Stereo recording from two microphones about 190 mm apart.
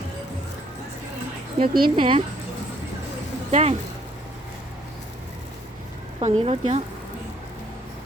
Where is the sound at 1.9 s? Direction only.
25° right (ahead or behind).